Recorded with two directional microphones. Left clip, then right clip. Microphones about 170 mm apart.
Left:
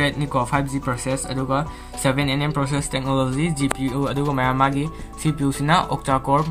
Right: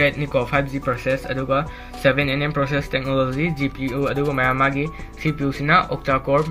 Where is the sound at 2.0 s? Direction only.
45° left (ahead or behind).